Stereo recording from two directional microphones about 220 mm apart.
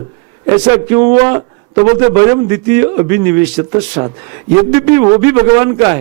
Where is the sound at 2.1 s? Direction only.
15° right (ahead or behind).